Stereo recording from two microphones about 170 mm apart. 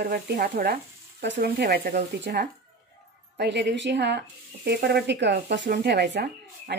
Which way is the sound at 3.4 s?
90° right.